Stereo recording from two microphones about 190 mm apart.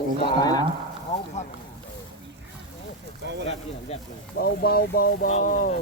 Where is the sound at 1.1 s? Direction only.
35° left (ahead or behind).